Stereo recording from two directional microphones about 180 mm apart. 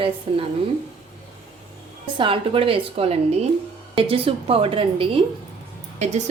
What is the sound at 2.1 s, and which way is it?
A woman's voice, 30° right (ahead or behind).